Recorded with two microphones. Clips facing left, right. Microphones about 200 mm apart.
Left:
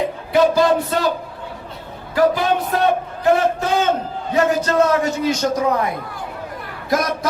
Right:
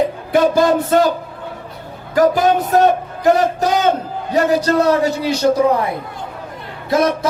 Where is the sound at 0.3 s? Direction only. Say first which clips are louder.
Right 1 dB; 50° right (ahead or behind).